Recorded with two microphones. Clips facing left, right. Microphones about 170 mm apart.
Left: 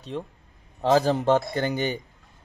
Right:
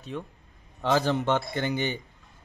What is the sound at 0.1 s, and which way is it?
A man's voice, 30° left (ahead or behind).